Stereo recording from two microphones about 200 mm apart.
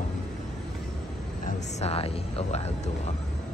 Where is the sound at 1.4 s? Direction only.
30° left (ahead or behind).